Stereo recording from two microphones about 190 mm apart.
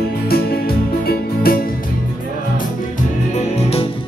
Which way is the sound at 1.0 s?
50° left (ahead or behind).